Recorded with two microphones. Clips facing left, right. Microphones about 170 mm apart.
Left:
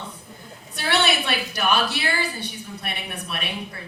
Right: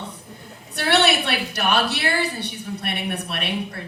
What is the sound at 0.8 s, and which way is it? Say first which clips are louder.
A woman's voice: right 3 dB; 65° right (ahead or behind).